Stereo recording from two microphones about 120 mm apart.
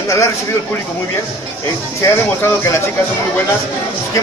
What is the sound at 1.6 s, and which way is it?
A man's voice, 25° left (ahead or behind).